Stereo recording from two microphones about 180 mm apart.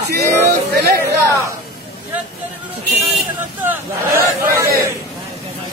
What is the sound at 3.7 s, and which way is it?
A man's voice, 15° right (ahead or behind).